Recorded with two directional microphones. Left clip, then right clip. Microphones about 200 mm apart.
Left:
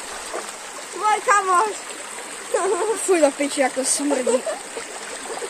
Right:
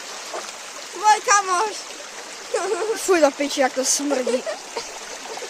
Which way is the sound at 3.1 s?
25° right (ahead or behind).